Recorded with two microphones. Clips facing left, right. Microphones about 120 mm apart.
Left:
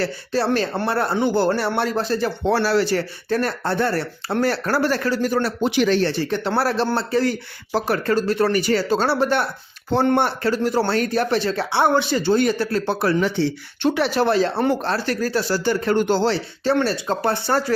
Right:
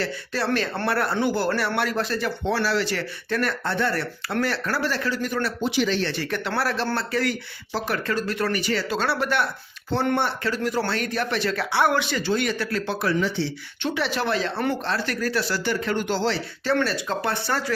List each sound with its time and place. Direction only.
0.0 s speech: 30° left (ahead or behind)
5.6 s speech: 55° left (ahead or behind)
6.1 s speech: 30° left (ahead or behind)
13.1 s speech: 50° left (ahead or behind); by 17.6 s 35° left (ahead or behind)